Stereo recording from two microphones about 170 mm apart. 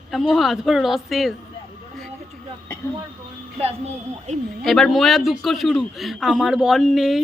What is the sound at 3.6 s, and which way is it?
Speech, 40° right (ahead or behind).